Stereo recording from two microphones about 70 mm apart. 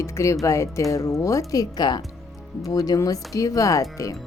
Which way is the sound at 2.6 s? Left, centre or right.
Left.